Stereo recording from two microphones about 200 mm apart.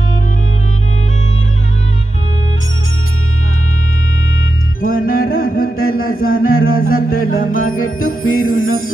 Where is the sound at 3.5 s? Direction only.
90° left.